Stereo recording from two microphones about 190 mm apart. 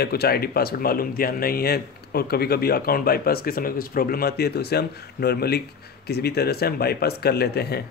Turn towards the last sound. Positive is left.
turn(degrees=55)  # may be behind; listen again after turning